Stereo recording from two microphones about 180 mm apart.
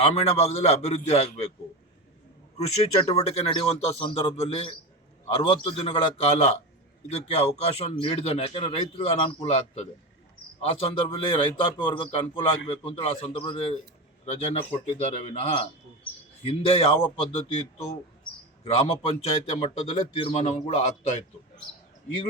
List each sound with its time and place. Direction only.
0.0 s a man's voice: 30° left (ahead or behind)
3.1 s a man's voice: 35° left (ahead or behind)
18.6 s a man's voice: 30° left (ahead or behind)